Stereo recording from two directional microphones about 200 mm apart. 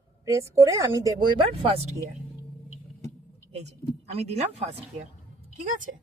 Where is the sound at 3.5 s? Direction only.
35° right (ahead or behind).